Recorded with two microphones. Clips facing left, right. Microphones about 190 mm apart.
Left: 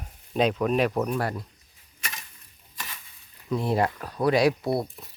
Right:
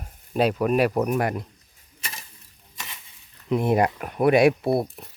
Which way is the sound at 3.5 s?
20° right (ahead or behind).